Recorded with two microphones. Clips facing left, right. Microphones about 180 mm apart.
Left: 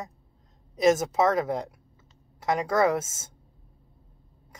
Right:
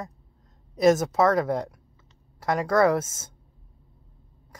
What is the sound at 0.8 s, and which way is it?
Speech, 25° left (ahead or behind).